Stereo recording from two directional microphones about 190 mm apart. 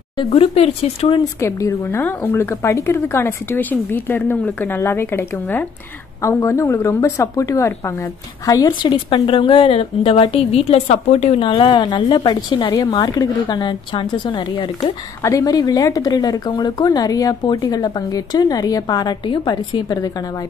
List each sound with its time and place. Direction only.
0.2 s speech: 30° left (ahead or behind)
1.4 s a woman's voice: 15° left (ahead or behind)